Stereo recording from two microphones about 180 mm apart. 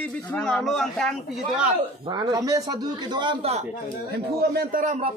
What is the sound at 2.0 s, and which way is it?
A man's voice, 20° right (ahead or behind).